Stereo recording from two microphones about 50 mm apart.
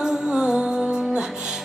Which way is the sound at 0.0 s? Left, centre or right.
Centre.